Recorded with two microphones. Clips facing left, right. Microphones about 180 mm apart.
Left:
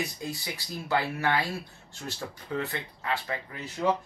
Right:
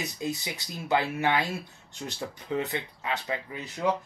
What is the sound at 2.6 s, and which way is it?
Speech, 20° right (ahead or behind).